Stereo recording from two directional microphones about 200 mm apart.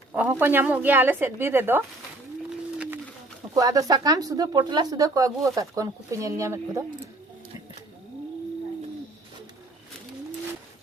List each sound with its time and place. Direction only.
0.1 s speech: 5° right (ahead or behind)
2.7 s a sound: 5° right (ahead or behind)
3.5 s speech: 15° right (ahead or behind)